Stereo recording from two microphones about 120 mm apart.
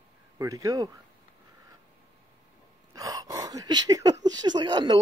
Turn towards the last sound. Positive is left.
turn(degrees=-35)  # may be behind; listen again after turning